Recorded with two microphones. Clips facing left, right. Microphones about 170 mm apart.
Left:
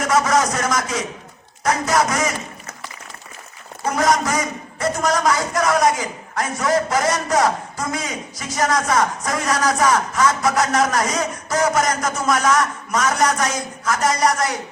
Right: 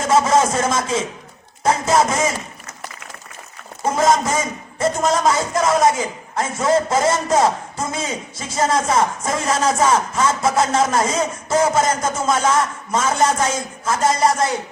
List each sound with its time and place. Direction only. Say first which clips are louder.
0.0 s a man's voice: right 2 dB; 25° right (ahead or behind)
3.8 s a man's voice: right 2 dB; 25° right (ahead or behind)